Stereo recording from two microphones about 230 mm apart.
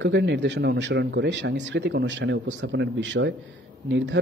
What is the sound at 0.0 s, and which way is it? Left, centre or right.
Speech, right.